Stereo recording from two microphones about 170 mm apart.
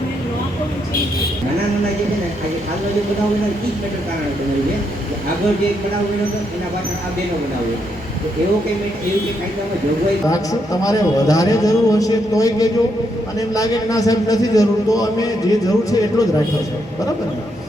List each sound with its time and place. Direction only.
10.2 s a man's voice: 20° left (ahead or behind)